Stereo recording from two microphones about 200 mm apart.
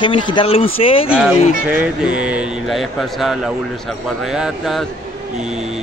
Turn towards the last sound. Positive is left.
turn(degrees=0)  # may be behind; listen again after turning